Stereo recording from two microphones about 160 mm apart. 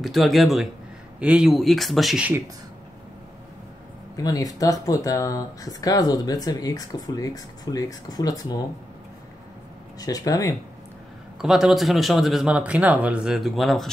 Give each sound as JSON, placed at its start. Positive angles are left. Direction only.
{"t": 0.0, "sound": "speech", "side_deg": 0}
{"t": 4.2, "sound": "speech", "side_deg": 25}
{"t": 9.9, "sound": "speech", "side_deg": 20}
{"t": 11.4, "sound": "speech", "side_deg": -5}